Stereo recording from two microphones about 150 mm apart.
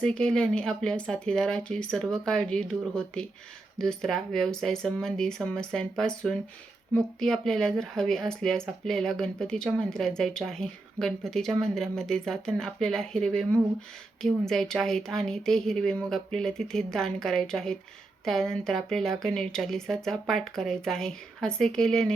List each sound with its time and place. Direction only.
0.0 s speech: 5° left (ahead or behind)